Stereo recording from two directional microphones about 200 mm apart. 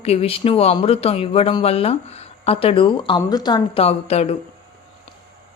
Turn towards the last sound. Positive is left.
turn(degrees=30)  # may be behind; listen again after turning